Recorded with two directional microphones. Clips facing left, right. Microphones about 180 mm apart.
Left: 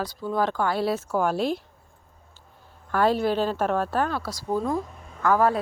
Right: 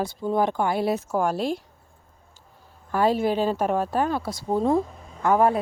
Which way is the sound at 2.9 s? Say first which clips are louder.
Right 1 dB; 5° right (ahead or behind).